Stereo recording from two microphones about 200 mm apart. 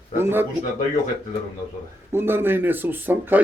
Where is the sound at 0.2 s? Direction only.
10° right (ahead or behind).